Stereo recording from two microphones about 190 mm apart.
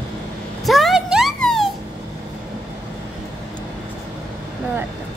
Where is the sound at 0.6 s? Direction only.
Centre (ahead or behind).